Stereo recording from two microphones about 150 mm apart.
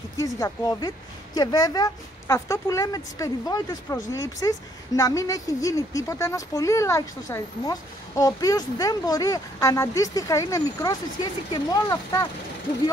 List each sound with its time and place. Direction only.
0.4 s speech: 25° left (ahead or behind)